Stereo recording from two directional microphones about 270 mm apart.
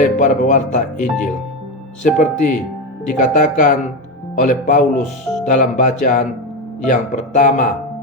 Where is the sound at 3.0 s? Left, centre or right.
Left.